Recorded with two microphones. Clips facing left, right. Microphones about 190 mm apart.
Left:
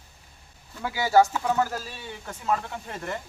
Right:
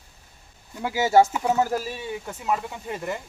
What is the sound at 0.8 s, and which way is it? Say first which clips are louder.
Speech: right 2 dB; 25° right (ahead or behind).